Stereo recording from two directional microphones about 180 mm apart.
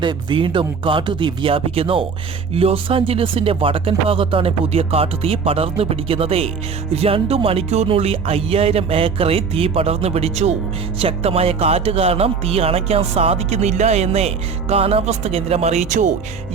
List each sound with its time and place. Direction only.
0.0 s speech: 25° right (ahead or behind); by 16.1 s 45° right (ahead or behind)